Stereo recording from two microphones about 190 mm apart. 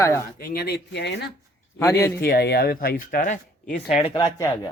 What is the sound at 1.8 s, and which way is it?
Speech, 15° left (ahead or behind).